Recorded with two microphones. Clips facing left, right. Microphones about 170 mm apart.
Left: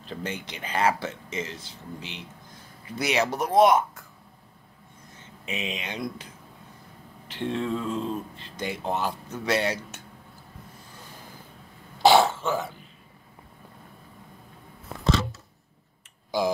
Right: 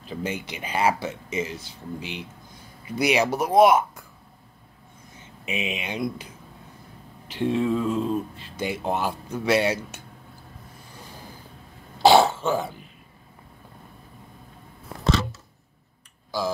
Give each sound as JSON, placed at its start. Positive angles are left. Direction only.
{"t": 0.0, "sound": "speech", "side_deg": -10}
{"t": 5.4, "sound": "speech", "side_deg": -10}
{"t": 7.2, "sound": "speech", "side_deg": -10}
{"t": 12.1, "sound": "throat clearing", "side_deg": -20}
{"t": 16.3, "sound": "speech", "side_deg": 20}